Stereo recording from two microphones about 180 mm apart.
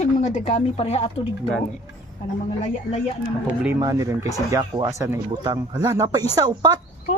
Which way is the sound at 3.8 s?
20° right (ahead or behind).